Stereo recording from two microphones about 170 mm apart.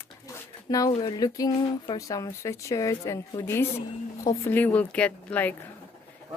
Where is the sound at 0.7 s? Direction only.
20° left (ahead or behind).